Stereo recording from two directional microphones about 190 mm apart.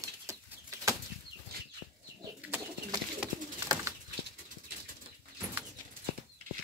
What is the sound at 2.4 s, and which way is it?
Bird, 15° right (ahead or behind).